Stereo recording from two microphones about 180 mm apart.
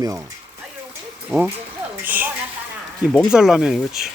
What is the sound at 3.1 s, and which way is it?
Speech, centre (ahead or behind).